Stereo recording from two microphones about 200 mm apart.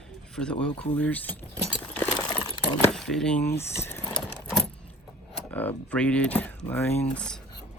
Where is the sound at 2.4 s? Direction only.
25° left (ahead or behind).